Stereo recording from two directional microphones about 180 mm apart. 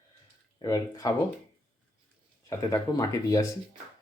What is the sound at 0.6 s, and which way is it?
Speech, 20° left (ahead or behind).